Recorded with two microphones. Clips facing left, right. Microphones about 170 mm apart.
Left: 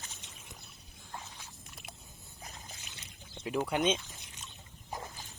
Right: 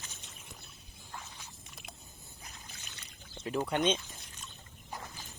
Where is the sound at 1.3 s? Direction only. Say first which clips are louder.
Even; centre (ahead or behind).